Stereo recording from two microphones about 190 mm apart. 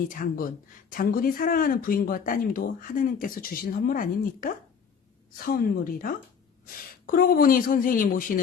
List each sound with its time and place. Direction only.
0.1 s speech: 45° left (ahead or behind)